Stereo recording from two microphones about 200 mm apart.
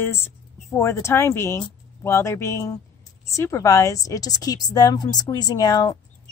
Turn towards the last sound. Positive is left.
turn(degrees=20)  # may be behind; listen again after turning